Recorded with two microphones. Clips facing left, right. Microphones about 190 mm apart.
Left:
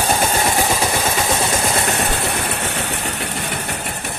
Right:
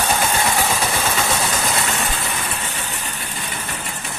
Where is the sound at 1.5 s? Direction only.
30° left (ahead or behind).